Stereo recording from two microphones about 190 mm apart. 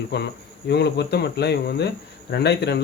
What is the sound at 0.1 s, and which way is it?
Speech, 60° left (ahead or behind).